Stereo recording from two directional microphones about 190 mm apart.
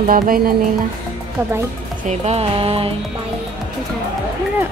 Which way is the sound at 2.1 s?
35° right (ahead or behind).